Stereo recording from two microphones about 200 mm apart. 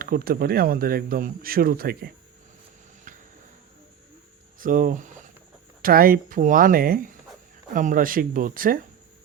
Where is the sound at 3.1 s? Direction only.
40° right (ahead or behind).